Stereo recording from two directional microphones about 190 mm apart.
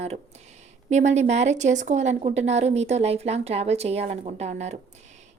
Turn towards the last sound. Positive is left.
turn(degrees=-40)  # may be behind; listen again after turning